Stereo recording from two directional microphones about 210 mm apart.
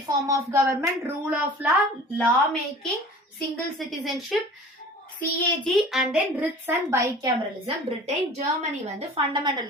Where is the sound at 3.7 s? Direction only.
Centre (ahead or behind).